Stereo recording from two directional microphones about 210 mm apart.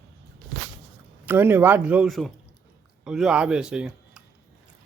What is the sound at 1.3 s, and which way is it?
Speech, 10° right (ahead or behind).